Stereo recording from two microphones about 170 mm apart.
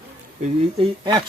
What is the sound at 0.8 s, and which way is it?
Speech, 35° right (ahead or behind).